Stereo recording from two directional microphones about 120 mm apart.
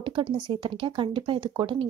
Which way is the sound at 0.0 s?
40° right (ahead or behind).